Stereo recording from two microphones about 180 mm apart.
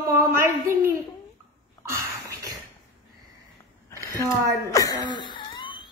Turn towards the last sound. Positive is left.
turn(degrees=25)  # may be behind; listen again after turning